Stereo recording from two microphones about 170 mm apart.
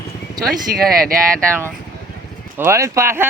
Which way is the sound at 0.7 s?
60° right (ahead or behind).